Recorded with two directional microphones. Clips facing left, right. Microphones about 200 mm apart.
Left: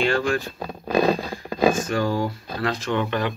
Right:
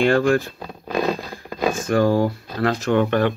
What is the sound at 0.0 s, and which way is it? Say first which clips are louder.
Speech: right 5 dB; 55° right (ahead or behind).